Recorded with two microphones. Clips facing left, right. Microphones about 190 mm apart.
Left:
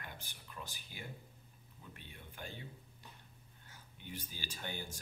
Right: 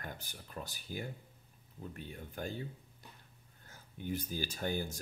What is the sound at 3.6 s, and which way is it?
Speech, 45° right (ahead or behind).